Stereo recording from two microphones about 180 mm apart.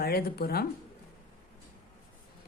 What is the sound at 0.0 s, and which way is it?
Speech, 60° left (ahead or behind).